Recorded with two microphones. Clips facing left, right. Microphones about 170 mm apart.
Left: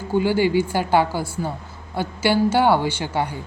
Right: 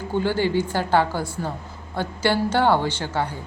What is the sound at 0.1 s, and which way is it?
Speech, 10° left (ahead or behind).